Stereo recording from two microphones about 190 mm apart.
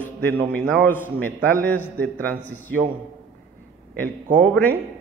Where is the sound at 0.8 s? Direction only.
10° left (ahead or behind).